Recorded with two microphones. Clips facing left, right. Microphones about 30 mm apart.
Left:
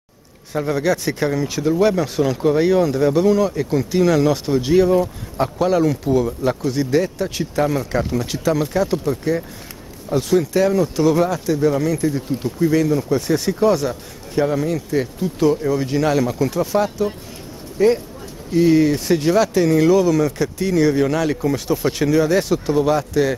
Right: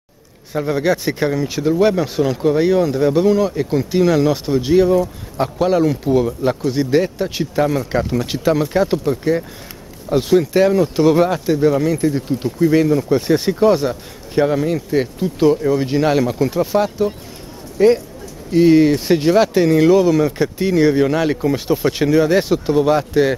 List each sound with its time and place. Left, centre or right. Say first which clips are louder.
0.5 s speech: right 2 dB; centre
7.6 s speech: right 1 dB; centre
8.1 s speech: right 3 dB; centre
10.0 s speech: right 3 dB; centre
17.8 s speech: right 3 dB; right